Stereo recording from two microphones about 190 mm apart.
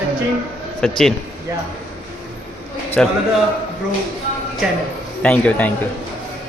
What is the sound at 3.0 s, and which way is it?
Speech, 5° left (ahead or behind).